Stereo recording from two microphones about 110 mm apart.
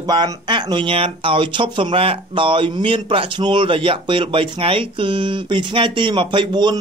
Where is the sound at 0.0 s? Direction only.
40° right (ahead or behind).